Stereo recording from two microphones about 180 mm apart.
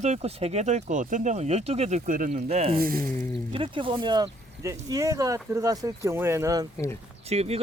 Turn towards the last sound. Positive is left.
turn(degrees=-35)  # may be behind; listen again after turning